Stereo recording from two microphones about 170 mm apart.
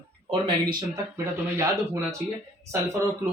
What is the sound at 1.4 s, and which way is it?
Speech, 15° right (ahead or behind).